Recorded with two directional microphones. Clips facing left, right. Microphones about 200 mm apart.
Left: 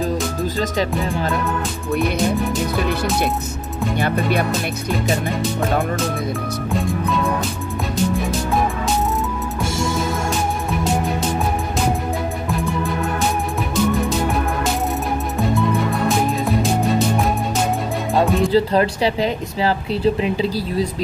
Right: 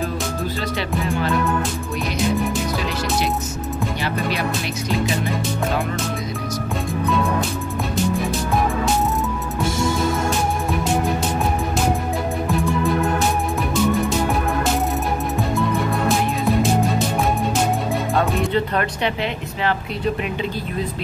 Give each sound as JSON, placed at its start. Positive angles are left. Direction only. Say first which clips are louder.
{"t": 4.0, "sound": "music", "louder": "left 7 dB", "side_deg": 55}
{"t": 6.7, "sound": "speech", "louder": "left 1 dB", "side_deg": 0}
{"t": 18.5, "sound": "speech", "louder": "left 5 dB", "side_deg": 30}